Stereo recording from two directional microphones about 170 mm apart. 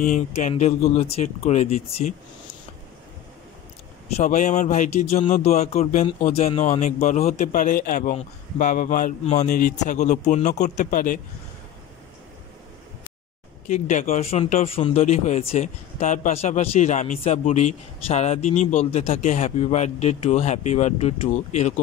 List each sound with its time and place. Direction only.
0.0 s speech: 45° left (ahead or behind)
4.2 s a man's voice: 45° left (ahead or behind)
8.1 s a man's voice: 45° left (ahead or behind)
13.7 s speech: 45° left (ahead or behind)